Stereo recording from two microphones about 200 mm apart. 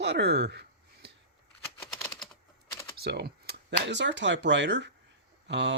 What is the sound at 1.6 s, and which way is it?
Typing, 15° left (ahead or behind).